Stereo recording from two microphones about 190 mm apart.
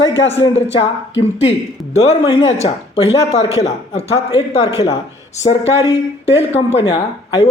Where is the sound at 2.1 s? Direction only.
30° left (ahead or behind).